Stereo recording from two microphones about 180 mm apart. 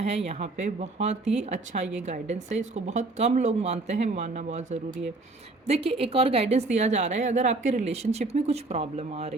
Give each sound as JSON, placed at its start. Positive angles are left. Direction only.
{"t": 0.3, "sound": "a woman's voice", "side_deg": -35}